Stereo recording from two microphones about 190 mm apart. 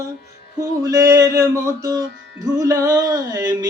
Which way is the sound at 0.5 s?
20° right (ahead or behind).